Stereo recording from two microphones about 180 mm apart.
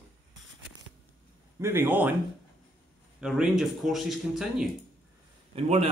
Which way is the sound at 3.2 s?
5° right (ahead or behind).